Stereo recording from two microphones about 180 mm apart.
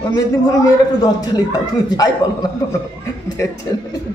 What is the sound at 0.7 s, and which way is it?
A man's voice, 20° left (ahead or behind).